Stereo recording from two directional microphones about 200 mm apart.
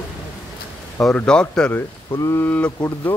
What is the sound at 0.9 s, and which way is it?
Speech, 5° left (ahead or behind).